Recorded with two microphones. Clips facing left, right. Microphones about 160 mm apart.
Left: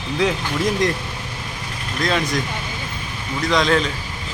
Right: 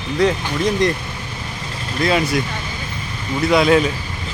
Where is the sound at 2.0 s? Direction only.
5° right (ahead or behind).